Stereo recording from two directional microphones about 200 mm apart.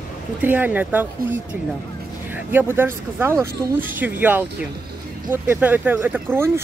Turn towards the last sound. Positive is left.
turn(degrees=-10)  # may be behind; listen again after turning